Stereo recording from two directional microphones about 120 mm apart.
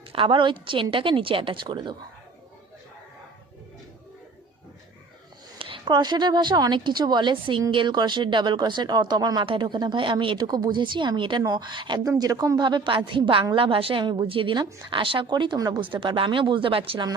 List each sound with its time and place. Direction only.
0.1 s a woman's voice: 45° right (ahead or behind)
5.5 s a woman's voice: 45° right (ahead or behind)
15.8 s a woman's voice: 45° right (ahead or behind)